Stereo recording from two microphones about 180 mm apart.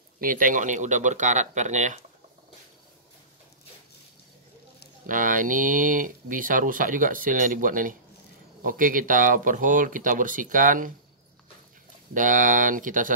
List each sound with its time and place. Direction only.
0.2 s speech: 50° right (ahead or behind)
5.0 s speech: 50° right (ahead or behind)
12.1 s speech: 45° right (ahead or behind)